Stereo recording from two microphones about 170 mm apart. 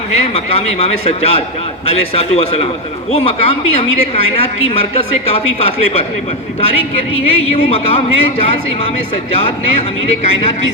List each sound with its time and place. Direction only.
0.1 s speech: 40° left (ahead or behind)